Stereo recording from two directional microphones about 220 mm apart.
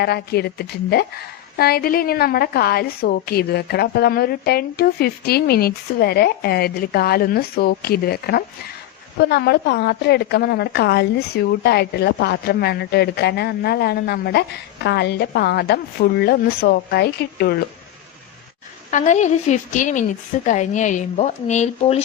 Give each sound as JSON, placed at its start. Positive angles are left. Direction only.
{"t": 0.0, "sound": "a woman's voice", "side_deg": 45}
{"t": 18.9, "sound": "a woman's voice", "side_deg": 35}